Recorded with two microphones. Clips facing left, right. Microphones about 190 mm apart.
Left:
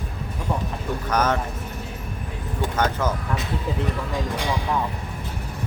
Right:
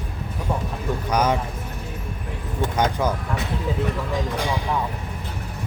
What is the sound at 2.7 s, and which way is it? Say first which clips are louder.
Speech: right 1 dB; 15° right (ahead or behind).